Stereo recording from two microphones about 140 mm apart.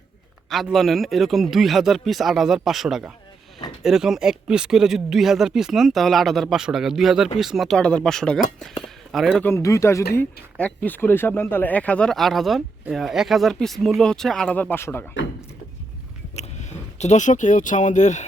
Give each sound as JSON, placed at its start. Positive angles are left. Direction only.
{"t": 0.5, "sound": "speech", "side_deg": 0}
{"t": 9.4, "sound": "speech", "side_deg": 20}
{"t": 16.3, "sound": "speech", "side_deg": 55}